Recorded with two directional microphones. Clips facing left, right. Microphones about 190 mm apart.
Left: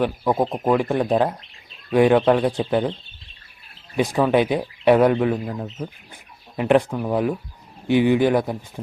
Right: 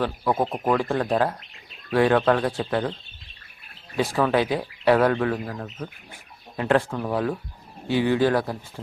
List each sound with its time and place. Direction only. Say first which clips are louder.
0.0 s speech: left 3 dB; 15° left (ahead or behind)
3.9 s speech: left 3 dB; 15° left (ahead or behind)